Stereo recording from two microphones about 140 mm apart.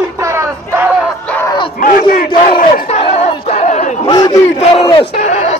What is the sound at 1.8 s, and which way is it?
Battle cry, 85° left.